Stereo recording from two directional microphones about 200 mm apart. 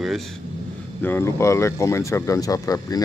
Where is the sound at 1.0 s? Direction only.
10° left (ahead or behind).